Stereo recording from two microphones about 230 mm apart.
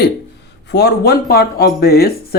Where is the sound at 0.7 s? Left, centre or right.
Left.